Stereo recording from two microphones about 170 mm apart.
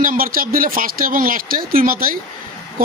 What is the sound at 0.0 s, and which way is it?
Speech, 55° right (ahead or behind).